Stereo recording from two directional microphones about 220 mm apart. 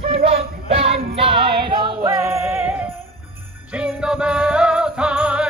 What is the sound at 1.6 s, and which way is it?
Music, 15° right (ahead or behind).